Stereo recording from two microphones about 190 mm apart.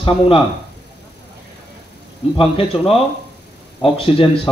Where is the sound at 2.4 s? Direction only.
30° left (ahead or behind).